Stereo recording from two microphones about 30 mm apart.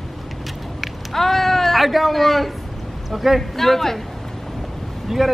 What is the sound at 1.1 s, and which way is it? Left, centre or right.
Speech, centre.